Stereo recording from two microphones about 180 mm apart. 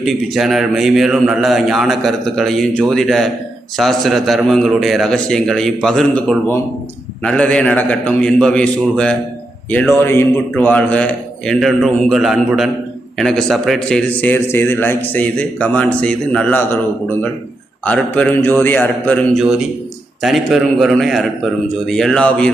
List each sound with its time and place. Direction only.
0.0 s a man's voice: centre (ahead or behind)
17.8 s a man's voice: 10° left (ahead or behind)
19.4 s a man's voice: centre (ahead or behind)